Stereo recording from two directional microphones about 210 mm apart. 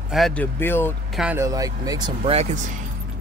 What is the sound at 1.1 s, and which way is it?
Speech, 10° right (ahead or behind).